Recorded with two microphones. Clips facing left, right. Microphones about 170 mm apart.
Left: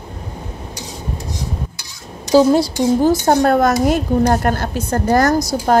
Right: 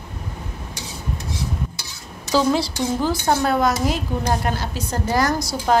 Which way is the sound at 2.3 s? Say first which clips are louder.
Left 7 dB; 45° left (ahead or behind).